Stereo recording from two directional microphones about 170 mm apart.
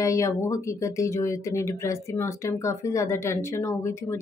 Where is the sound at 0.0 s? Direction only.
20° left (ahead or behind).